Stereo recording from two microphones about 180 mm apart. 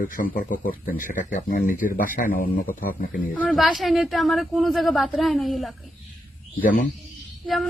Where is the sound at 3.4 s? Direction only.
5° left (ahead or behind).